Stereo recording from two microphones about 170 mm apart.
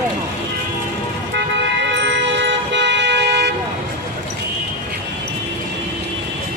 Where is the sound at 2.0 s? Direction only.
90° right.